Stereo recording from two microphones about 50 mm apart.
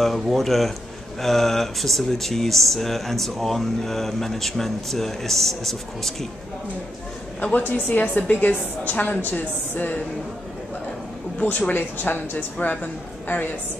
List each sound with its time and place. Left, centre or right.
0.0 s speech: centre
7.5 s a woman's voice: left
11.7 s a woman's voice: left